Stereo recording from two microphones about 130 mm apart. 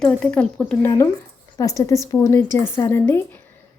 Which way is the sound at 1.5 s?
25° left (ahead or behind).